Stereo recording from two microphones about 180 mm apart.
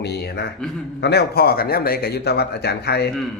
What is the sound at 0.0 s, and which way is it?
A man's voice, 65° left (ahead or behind).